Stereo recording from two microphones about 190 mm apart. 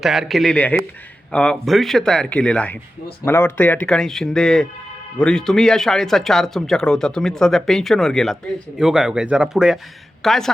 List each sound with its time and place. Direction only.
0.0 s speech: centre (ahead or behind)